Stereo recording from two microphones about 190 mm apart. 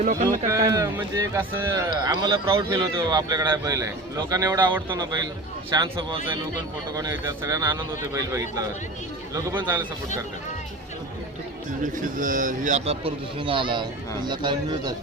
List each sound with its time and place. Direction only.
0.0 s a man's voice: 40° right (ahead or behind)
0.3 s a man's voice: 20° right (ahead or behind)
12.2 s a man's voice: 45° right (ahead or behind); by 14.9 s 25° right (ahead or behind)